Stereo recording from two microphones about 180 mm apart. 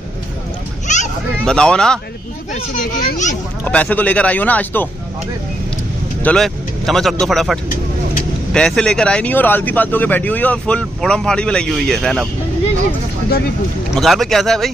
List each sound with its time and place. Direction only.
0.9 s children playing: 40° left (ahead or behind)
1.4 s speech: 5° left (ahead or behind)
3.0 s a child's voice: 50° left (ahead or behind)
3.6 s speech: 10° left (ahead or behind)
6.2 s speech: centre (ahead or behind)
13.9 s speech: centre (ahead or behind)